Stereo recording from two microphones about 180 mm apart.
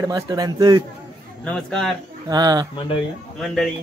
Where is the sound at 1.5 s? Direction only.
Centre (ahead or behind).